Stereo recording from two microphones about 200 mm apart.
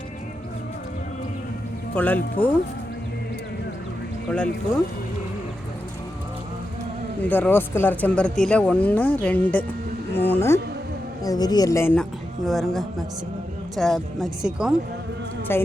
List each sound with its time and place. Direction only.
2.0 s speech: 10° left (ahead or behind)
7.2 s speech: 10° left (ahead or behind)
12.5 s speech: centre (ahead or behind)
15.5 s speech: 10° left (ahead or behind)